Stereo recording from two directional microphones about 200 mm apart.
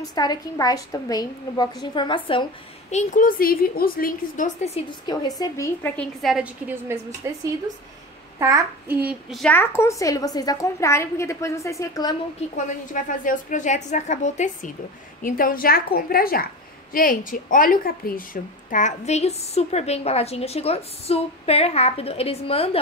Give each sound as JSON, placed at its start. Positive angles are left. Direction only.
{"t": 0.1, "sound": "a woman's voice", "side_deg": 20}
{"t": 2.9, "sound": "a woman's voice", "side_deg": 40}
{"t": 5.1, "sound": "a child's voice", "side_deg": 20}
{"t": 6.2, "sound": "a woman's voice", "side_deg": -5}
{"t": 12.9, "sound": "a woman's voice", "side_deg": 40}